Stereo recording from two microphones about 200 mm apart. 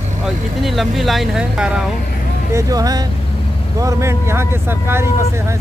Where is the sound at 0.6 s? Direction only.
Centre (ahead or behind).